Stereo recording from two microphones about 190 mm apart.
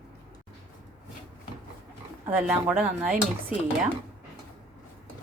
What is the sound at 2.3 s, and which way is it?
Speech, 10° right (ahead or behind).